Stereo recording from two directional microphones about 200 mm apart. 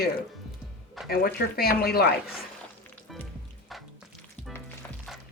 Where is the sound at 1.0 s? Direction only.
50° left (ahead or behind).